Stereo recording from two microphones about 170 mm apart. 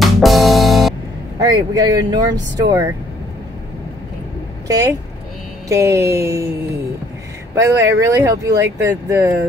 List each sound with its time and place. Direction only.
0.0 s music: centre (ahead or behind)
1.4 s speech: 25° right (ahead or behind)
4.6 s speech: 20° right (ahead or behind)
5.7 s a sound: 15° right (ahead or behind)
7.5 s speech: 20° right (ahead or behind)